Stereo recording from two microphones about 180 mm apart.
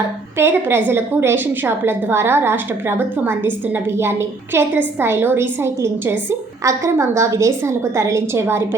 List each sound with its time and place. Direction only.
0.3 s a woman's voice: 15° right (ahead or behind)